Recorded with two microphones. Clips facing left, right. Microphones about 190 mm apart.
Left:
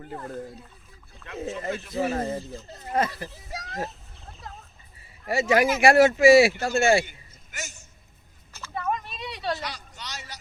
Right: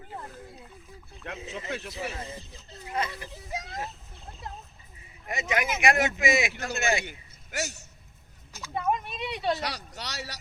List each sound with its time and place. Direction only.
1.4 s speech: 50° left (ahead or behind)
3.5 s speech: 20° right (ahead or behind)
5.3 s speech: 30° left (ahead or behind)
7.5 s a man's voice: 65° right (ahead or behind)
8.5 s a sound: 15° right (ahead or behind)
9.6 s a sound: 70° right (ahead or behind)